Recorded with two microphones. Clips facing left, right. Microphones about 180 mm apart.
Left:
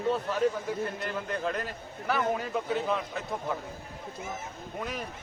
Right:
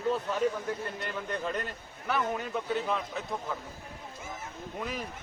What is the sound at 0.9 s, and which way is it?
A man's voice, centre (ahead or behind).